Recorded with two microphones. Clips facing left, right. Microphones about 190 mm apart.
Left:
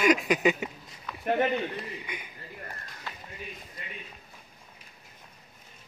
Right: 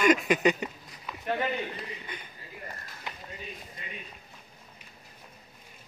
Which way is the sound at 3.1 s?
15° right (ahead or behind).